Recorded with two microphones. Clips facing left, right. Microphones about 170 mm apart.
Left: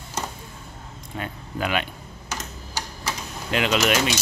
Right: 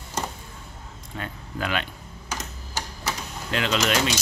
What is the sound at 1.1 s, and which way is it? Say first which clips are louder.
Speech: left 2 dB; 15° left (ahead or behind).